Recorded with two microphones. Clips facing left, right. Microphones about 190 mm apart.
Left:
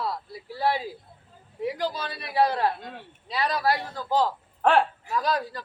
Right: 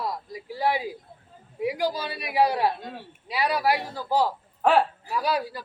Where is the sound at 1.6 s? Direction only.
10° right (ahead or behind).